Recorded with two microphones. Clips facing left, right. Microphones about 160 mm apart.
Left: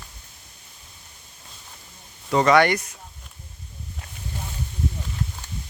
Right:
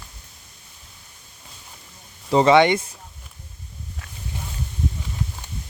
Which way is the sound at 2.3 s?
25° right (ahead or behind).